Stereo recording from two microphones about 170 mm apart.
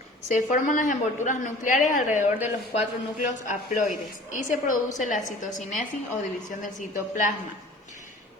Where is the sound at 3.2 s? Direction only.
45° left (ahead or behind).